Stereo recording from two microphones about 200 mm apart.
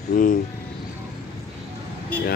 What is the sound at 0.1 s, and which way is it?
Speech, 40° left (ahead or behind).